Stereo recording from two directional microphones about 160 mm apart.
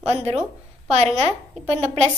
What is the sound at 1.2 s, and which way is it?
Speech, 40° right (ahead or behind).